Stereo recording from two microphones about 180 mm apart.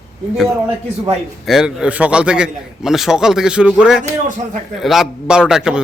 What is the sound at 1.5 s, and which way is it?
A man's voice, 5° right (ahead or behind).